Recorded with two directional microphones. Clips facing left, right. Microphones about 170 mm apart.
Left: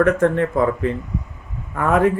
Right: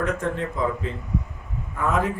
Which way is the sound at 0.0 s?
60° left (ahead or behind).